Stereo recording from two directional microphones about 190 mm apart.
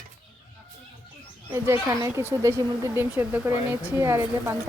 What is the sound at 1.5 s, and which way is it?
Speech, 15° right (ahead or behind).